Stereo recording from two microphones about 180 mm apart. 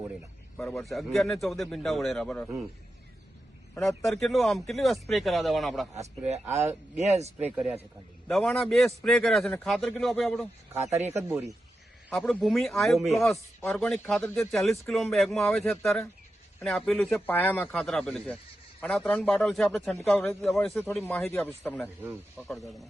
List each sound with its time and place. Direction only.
0.5 s speech: 10° left (ahead or behind)
0.9 s a man's voice: centre (ahead or behind)
3.8 s a man's voice: centre (ahead or behind)
6.6 s speech: 40° right (ahead or behind)
7.5 s a man's voice: 5° right (ahead or behind)
10.9 s speech: 40° right (ahead or behind)
11.2 s a man's voice: 15° right (ahead or behind)
12.2 s a man's voice: centre (ahead or behind)
21.2 s a man's voice: 10° left (ahead or behind)